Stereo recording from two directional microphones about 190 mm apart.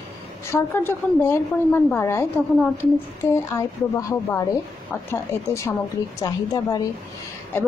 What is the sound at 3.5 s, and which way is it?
A woman's voice, 15° left (ahead or behind).